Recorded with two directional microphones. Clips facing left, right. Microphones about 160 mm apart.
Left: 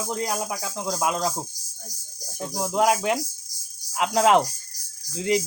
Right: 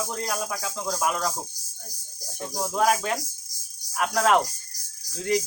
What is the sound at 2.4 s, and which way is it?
Speech, 15° left (ahead or behind).